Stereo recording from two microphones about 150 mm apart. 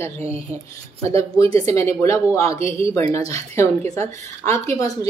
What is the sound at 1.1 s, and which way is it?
A woman's voice, 20° left (ahead or behind).